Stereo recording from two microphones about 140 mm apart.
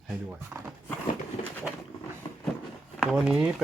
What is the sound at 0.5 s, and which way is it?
Speech, 15° right (ahead or behind).